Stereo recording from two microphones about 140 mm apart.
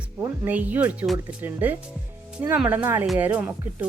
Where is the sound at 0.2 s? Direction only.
10° right (ahead or behind).